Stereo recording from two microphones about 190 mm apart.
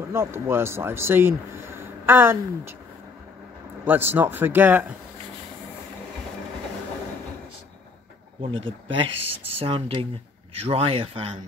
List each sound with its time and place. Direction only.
0.1 s speech: 15° right (ahead or behind)
3.8 s speech: 10° right (ahead or behind)
8.6 s a man's voice: 25° right (ahead or behind)